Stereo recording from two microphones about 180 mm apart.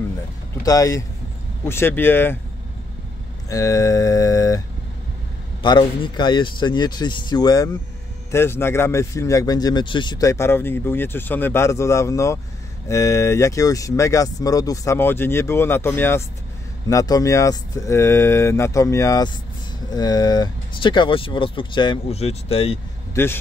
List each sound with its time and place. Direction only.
0.7 s speech: 20° left (ahead or behind)
3.4 s a sound: 20° left (ahead or behind)
5.6 s speech: 25° left (ahead or behind)
23.2 s speech: 15° left (ahead or behind)